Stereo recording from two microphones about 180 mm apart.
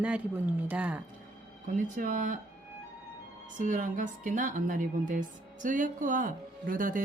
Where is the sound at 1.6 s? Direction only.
45° right (ahead or behind).